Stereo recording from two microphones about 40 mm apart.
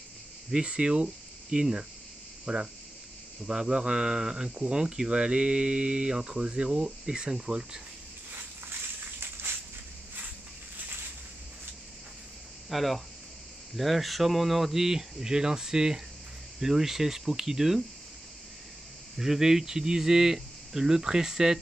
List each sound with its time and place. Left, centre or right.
0.5 s speech: right
12.6 s speech: centre
19.1 s speech: centre